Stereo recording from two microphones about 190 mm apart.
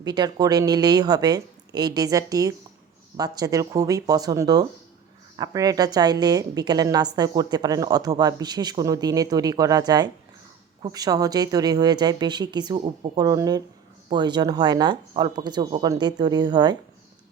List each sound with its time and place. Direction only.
0.0 s a woman's voice: 20° right (ahead or behind)